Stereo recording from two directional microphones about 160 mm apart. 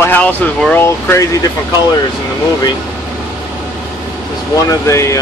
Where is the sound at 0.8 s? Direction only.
20° left (ahead or behind).